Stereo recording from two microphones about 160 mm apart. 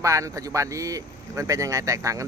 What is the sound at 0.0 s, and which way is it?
Speech, 20° right (ahead or behind).